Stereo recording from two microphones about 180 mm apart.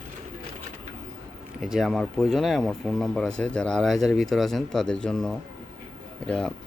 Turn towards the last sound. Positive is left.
turn(degrees=5)  # may be behind; listen again after turning